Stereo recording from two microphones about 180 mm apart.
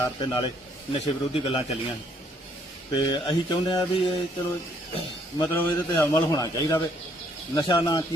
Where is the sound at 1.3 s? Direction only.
35° left (ahead or behind).